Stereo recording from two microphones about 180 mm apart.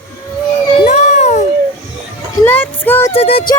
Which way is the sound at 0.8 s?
40° left (ahead or behind).